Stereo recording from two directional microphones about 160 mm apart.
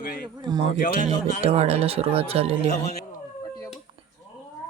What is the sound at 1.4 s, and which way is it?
Speech, 40° right (ahead or behind).